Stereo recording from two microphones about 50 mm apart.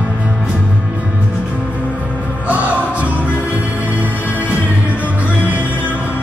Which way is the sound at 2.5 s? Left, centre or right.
Right.